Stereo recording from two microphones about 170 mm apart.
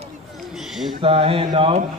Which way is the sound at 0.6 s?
Centre (ahead or behind).